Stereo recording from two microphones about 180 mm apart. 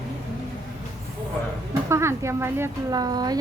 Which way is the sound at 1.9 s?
15° right (ahead or behind).